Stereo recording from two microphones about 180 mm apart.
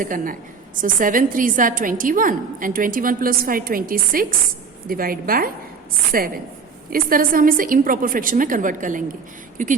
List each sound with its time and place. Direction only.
0.0 s a woman's voice: 50° right (ahead or behind)